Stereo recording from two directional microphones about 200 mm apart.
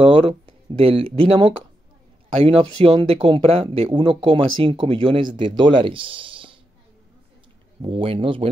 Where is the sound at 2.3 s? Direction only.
30° right (ahead or behind).